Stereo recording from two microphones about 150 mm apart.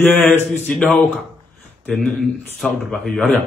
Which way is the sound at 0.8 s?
10° left (ahead or behind).